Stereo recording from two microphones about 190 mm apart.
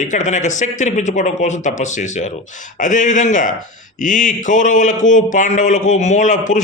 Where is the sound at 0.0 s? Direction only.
40° left (ahead or behind).